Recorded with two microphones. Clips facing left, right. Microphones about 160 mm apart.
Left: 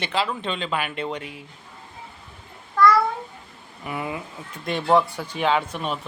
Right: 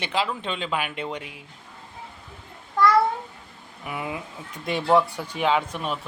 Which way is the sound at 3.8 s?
5° right (ahead or behind).